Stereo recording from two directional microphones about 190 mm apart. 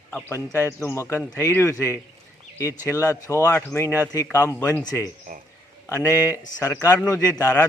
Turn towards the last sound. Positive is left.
turn(degrees=15)  # may be behind; listen again after turning